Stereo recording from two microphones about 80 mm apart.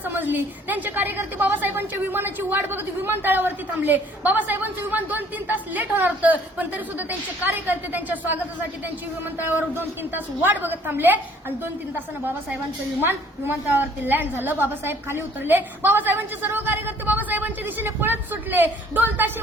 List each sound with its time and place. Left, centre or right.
0.0 s a woman's voice: right
9.5 s a woman's voice: right
13.0 s a woman's voice: right